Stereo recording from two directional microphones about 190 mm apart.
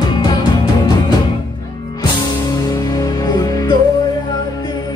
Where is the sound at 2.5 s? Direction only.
20° left (ahead or behind).